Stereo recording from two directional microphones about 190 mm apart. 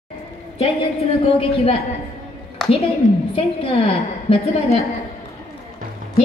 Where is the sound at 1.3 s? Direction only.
30° left (ahead or behind).